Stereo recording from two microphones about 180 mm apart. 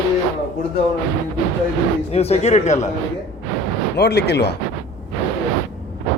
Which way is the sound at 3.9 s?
65° left (ahead or behind).